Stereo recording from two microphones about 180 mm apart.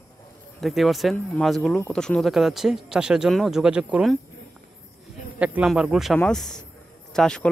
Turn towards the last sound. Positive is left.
turn(degrees=5)  # may be behind; listen again after turning